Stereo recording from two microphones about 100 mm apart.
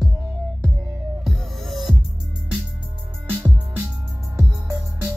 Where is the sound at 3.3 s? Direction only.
15° right (ahead or behind).